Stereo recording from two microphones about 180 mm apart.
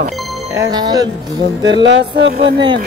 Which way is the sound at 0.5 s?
20° right (ahead or behind).